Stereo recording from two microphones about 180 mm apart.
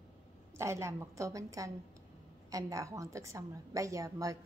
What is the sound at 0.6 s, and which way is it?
A woman's voice, 15° right (ahead or behind).